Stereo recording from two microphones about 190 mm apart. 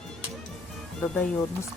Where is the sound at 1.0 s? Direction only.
10° left (ahead or behind).